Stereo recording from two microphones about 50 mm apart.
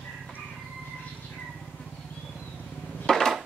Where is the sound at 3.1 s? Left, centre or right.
Centre.